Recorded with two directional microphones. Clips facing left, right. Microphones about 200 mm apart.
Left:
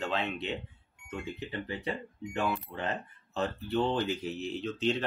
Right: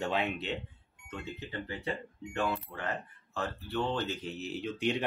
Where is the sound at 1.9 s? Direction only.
20° left (ahead or behind).